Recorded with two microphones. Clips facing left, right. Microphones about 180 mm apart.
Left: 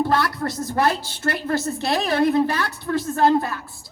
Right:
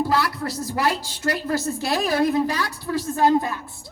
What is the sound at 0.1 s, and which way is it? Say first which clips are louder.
A woman's voice: left 1 dB; 5° right (ahead or behind).